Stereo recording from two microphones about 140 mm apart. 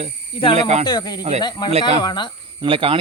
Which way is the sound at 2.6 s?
40° right (ahead or behind).